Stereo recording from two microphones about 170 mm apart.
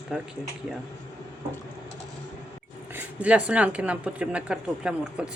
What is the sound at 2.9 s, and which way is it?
Speech, 10° right (ahead or behind).